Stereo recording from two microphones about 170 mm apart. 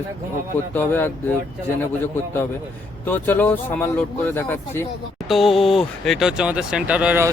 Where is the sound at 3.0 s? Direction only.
10° left (ahead or behind).